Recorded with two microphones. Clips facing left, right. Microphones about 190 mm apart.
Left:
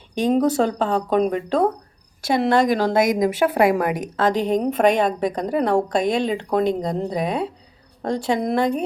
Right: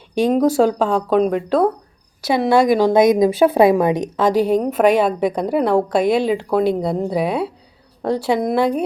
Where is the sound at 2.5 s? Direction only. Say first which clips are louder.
Right 6 dB; 10° right (ahead or behind).